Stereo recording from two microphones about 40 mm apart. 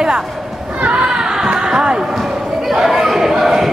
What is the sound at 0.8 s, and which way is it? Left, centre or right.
Children playing, right.